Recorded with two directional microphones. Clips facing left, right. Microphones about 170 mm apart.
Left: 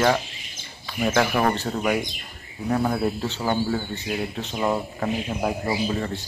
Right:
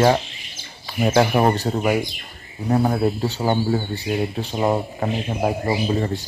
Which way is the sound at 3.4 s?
25° right (ahead or behind).